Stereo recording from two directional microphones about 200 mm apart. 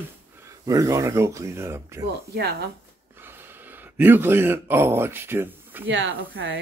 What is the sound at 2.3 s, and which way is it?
Speech, 55° right (ahead or behind).